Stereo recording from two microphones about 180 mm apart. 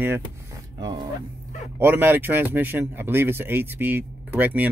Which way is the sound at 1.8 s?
10° right (ahead or behind).